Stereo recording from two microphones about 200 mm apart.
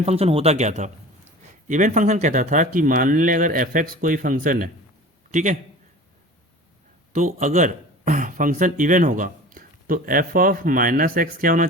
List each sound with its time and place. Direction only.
0.0 s a man's voice: 30° right (ahead or behind)
7.1 s a man's voice: 40° right (ahead or behind)